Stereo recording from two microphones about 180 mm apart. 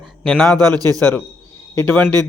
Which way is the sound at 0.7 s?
20° right (ahead or behind).